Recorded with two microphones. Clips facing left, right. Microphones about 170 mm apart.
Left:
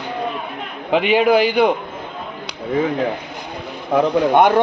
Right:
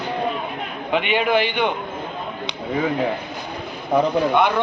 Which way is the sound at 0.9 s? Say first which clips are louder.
Left 5 dB; 35° left (ahead or behind).